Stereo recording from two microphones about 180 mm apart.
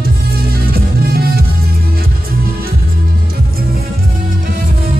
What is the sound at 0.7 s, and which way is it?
Music, 55° right (ahead or behind).